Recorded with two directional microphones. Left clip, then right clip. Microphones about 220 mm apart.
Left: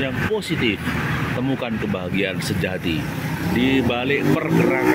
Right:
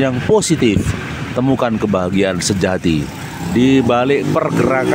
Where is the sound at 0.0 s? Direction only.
30° right (ahead or behind).